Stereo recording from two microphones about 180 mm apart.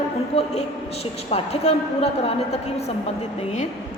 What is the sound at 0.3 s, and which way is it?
A woman's voice, 35° left (ahead or behind).